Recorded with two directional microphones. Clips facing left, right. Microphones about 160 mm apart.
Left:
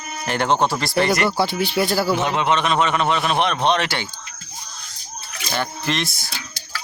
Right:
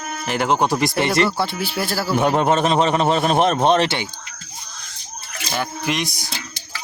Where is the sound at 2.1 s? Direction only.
50° right (ahead or behind).